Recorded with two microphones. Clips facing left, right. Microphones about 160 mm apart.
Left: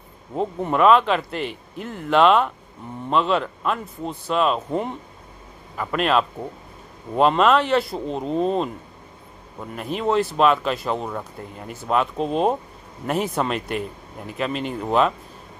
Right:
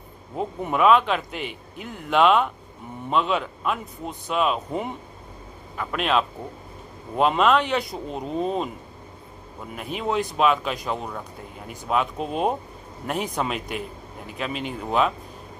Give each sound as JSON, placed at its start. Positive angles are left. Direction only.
{"t": 0.4, "sound": "a man's voice", "side_deg": -5}
{"t": 9.8, "sound": "a man's voice", "side_deg": 0}